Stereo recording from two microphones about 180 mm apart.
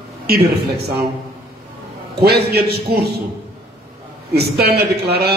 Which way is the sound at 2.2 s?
60° right (ahead or behind).